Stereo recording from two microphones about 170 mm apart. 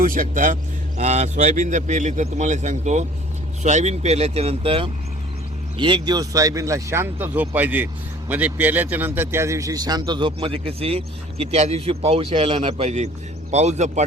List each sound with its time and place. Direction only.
0.0 s a man's voice: 55° right (ahead or behind)